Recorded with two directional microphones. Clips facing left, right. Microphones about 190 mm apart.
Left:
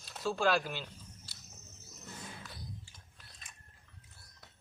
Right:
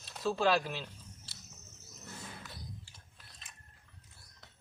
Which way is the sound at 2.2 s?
5° right (ahead or behind).